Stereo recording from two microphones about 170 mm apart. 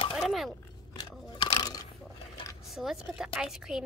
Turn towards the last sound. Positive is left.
turn(degrees=0)  # may be behind; listen again after turning